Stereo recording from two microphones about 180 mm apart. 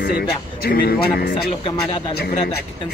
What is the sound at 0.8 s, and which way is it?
Speech, 60° left (ahead or behind).